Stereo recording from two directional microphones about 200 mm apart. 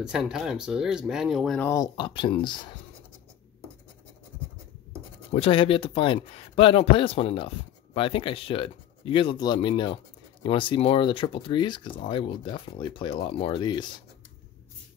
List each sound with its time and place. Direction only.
0.0 s speech: 5° right (ahead or behind)
1.7 s speech: 20° left (ahead or behind)
5.3 s speech: 30° left (ahead or behind)